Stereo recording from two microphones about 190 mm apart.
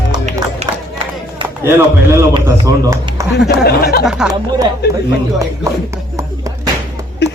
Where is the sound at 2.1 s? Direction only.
20° right (ahead or behind).